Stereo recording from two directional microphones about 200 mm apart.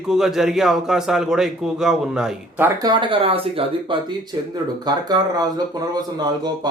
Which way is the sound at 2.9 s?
25° right (ahead or behind).